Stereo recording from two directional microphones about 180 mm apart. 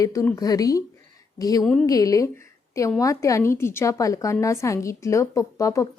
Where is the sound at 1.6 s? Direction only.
5° left (ahead or behind).